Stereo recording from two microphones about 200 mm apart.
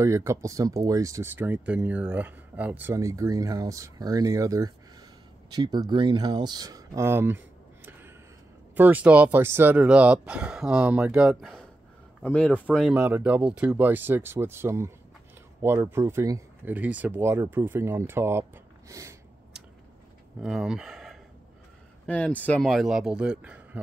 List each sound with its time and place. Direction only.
0.0 s speech: 15° right (ahead or behind)
20.4 s speech: centre (ahead or behind)